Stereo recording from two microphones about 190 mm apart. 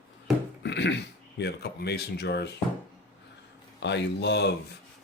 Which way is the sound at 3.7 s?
65° left (ahead or behind).